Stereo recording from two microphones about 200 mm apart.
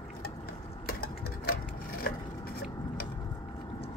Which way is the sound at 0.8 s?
50° left (ahead or behind).